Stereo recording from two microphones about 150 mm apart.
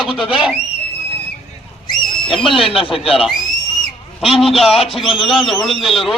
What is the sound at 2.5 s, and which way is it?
Speech, 35° left (ahead or behind).